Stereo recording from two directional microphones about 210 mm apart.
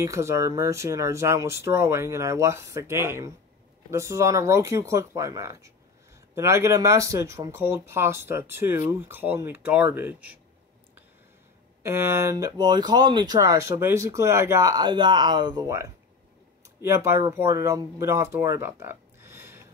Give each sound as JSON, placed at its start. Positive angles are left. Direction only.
{"t": 0.0, "sound": "speech", "side_deg": -15}
{"t": 11.8, "sound": "speech", "side_deg": -10}